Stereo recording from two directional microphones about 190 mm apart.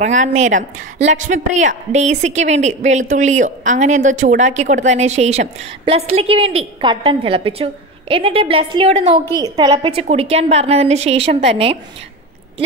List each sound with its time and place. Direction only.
0.0 s a woman's voice: 40° right (ahead or behind)